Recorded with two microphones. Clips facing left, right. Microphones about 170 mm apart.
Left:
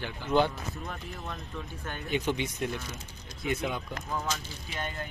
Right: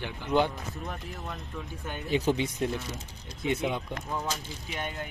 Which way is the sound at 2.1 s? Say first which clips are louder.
Right 4 dB; 35° right (ahead or behind).